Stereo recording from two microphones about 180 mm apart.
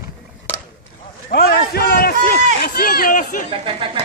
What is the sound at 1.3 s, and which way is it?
A man's voice, 60° left (ahead or behind).